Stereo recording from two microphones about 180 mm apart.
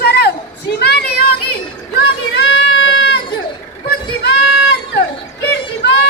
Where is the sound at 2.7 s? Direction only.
85° left.